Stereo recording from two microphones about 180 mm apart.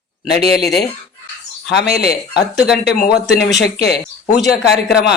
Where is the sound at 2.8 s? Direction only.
60° left (ahead or behind).